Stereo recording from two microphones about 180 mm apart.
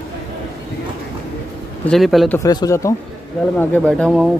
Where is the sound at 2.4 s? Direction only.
20° left (ahead or behind).